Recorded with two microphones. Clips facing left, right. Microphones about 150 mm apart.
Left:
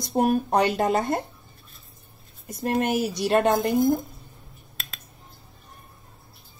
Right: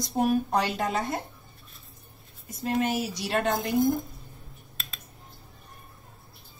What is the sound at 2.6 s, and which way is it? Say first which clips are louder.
A woman's voice: left 3 dB; 60° left (ahead or behind).